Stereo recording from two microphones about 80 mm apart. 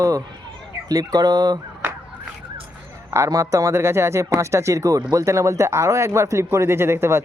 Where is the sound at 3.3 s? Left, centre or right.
Right.